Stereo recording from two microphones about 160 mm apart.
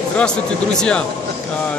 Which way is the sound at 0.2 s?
5° left (ahead or behind).